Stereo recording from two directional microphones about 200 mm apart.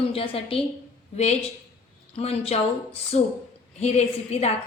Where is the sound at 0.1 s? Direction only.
30° left (ahead or behind).